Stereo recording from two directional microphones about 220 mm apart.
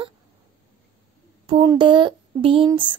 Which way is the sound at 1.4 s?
20° right (ahead or behind).